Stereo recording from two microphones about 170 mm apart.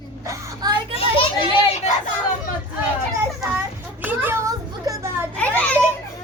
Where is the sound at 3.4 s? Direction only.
10° right (ahead or behind).